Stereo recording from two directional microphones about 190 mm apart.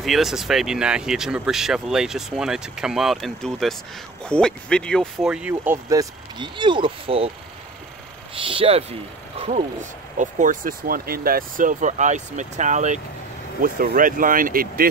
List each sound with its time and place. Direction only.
0.0 s speech: centre (ahead or behind); by 7.2 s 30° right (ahead or behind)
8.4 s speech: 30° right (ahead or behind); by 14.9 s 50° right (ahead or behind)